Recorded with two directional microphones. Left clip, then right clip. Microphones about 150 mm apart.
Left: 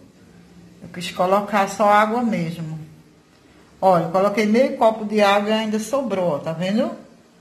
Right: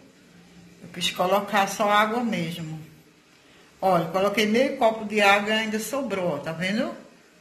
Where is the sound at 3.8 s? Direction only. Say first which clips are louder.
Left 6 dB; 35° left (ahead or behind).